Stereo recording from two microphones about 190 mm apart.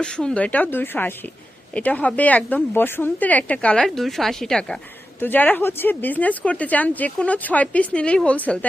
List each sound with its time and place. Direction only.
0.0 s speech: 5° left (ahead or behind)